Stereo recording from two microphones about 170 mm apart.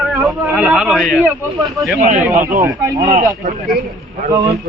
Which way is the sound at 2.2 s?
15° right (ahead or behind).